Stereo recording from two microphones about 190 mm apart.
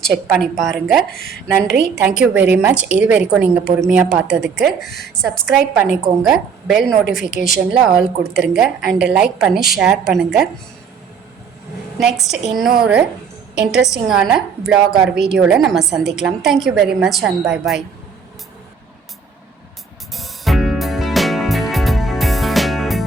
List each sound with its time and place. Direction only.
0.0 s a woman's voice: centre (ahead or behind)
11.9 s a woman's voice: centre (ahead or behind)
20.1 s music: centre (ahead or behind)